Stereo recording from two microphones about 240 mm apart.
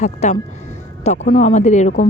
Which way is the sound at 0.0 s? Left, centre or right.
Left.